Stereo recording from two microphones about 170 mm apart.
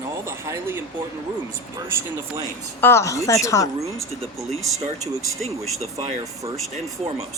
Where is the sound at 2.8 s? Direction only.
15° left (ahead or behind).